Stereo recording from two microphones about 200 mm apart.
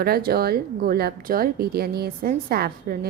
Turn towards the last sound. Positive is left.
turn(degrees=-50)  # may be behind; listen again after turning